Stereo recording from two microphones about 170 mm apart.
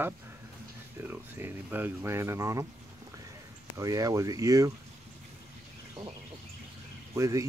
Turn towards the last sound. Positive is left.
turn(degrees=-15)  # may be behind; listen again after turning